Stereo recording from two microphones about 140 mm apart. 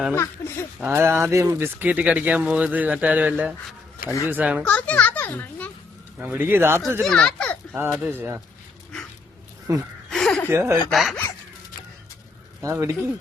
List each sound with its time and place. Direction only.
0.4 s speech: 20° left (ahead or behind)
0.8 s speech: 15° right (ahead or behind)
4.6 s a child's voice: 10° left (ahead or behind)
6.1 s speech: 10° right (ahead or behind)
7.0 s a child's voice: 5° left (ahead or behind)
7.7 s speech: 5° right (ahead or behind)
9.7 s a man's voice: 25° right (ahead or behind)
10.1 s chuckle: 5° left (ahead or behind)
10.5 s a man's voice: 20° right (ahead or behind)
10.8 s speech: centre (ahead or behind)
12.6 s a man's voice: 20° right (ahead or behind)